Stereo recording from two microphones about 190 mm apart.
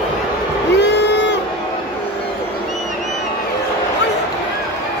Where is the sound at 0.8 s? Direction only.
65° left (ahead or behind).